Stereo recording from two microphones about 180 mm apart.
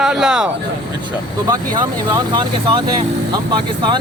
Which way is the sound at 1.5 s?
25° right (ahead or behind).